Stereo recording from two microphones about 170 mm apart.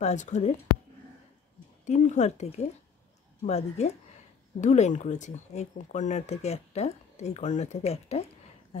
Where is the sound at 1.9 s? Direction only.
45° left (ahead or behind).